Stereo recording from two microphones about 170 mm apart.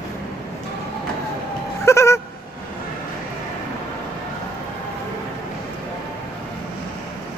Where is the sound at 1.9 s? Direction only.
15° left (ahead or behind).